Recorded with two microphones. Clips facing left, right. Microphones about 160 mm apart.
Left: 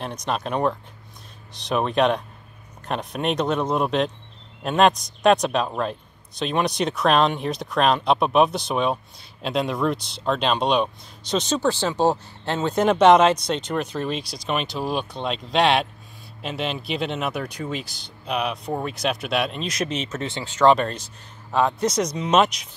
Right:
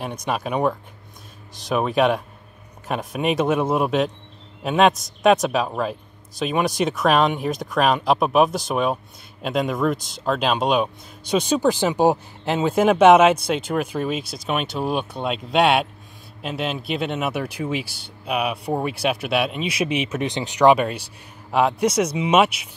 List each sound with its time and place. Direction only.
0.0 s speech: 5° right (ahead or behind)
9.9 s speech: 45° right (ahead or behind)
10.2 s speech: 5° right (ahead or behind)